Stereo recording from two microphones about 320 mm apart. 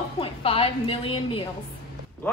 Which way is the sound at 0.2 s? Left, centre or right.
Centre.